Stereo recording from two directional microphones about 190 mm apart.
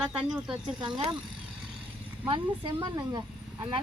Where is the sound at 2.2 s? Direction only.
25° right (ahead or behind).